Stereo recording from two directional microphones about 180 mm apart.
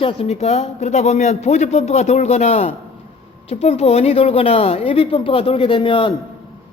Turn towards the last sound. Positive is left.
turn(degrees=30)  # may be behind; listen again after turning